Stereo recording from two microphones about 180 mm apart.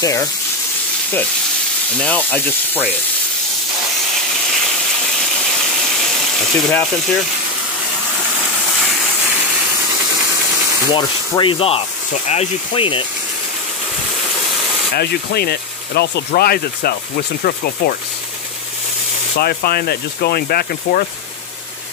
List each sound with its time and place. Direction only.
0.0 s sanding: 20° left (ahead or behind)
2.0 s speech: 10° left (ahead or behind)
5.9 s ratchet: centre (ahead or behind)
10.9 s sanding: 25° left (ahead or behind)
15.0 s speech: 60° left (ahead or behind)
19.3 s speech: 60° left (ahead or behind)